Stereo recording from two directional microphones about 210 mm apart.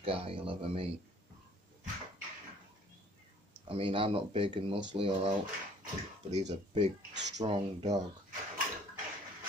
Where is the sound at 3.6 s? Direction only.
25° right (ahead or behind).